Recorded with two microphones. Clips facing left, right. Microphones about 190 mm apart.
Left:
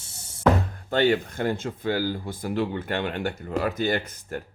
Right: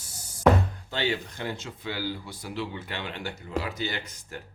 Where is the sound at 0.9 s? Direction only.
55° left (ahead or behind).